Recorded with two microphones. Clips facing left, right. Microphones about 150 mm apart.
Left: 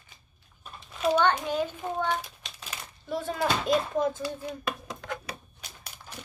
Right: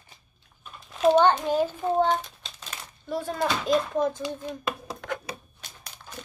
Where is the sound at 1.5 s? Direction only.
40° right (ahead or behind).